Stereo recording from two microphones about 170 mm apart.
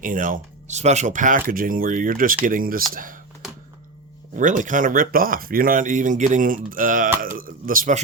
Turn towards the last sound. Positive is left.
turn(degrees=-55)  # may be behind; listen again after turning